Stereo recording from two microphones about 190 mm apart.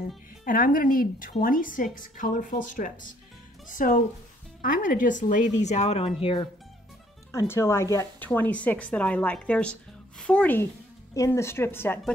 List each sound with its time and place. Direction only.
0.5 s a woman's voice: 45° left (ahead or behind); by 6.4 s 30° left (ahead or behind)
7.3 s a woman's voice: 15° left (ahead or behind)